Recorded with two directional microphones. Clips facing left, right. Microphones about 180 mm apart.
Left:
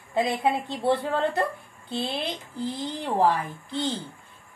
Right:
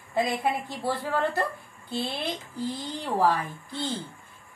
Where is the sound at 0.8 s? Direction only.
25° left (ahead or behind).